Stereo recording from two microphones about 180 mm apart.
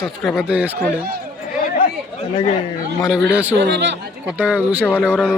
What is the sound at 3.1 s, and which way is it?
Speech, 5° right (ahead or behind).